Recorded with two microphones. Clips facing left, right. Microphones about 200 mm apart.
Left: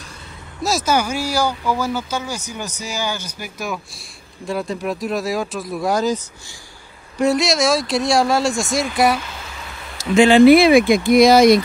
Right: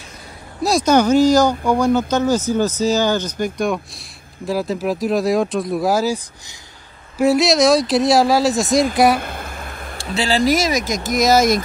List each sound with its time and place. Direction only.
0.7 s speech: 5° left (ahead or behind)
1.5 s speech: 50° right (ahead or behind)
1.8 s speech: 5° left (ahead or behind)
7.2 s speech: centre (ahead or behind)
9.2 s a sound: 55° right (ahead or behind)
9.9 s speech: 35° right (ahead or behind)